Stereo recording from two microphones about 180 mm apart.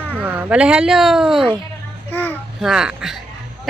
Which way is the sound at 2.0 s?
10° left (ahead or behind).